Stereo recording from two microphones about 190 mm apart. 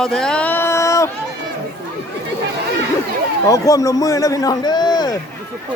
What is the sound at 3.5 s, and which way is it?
A man's voice, 15° left (ahead or behind).